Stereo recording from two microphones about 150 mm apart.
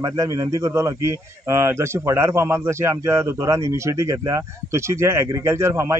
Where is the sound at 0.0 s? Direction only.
20° right (ahead or behind).